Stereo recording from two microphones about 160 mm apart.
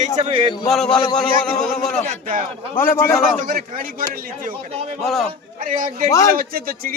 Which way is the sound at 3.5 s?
65° right (ahead or behind).